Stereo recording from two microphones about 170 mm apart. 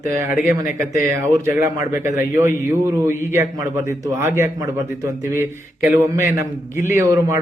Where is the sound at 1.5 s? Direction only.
15° right (ahead or behind).